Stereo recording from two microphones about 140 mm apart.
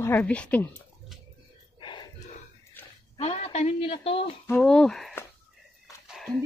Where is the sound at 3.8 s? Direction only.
40° left (ahead or behind).